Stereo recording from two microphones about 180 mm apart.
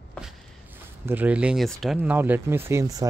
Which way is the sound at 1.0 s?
10° right (ahead or behind).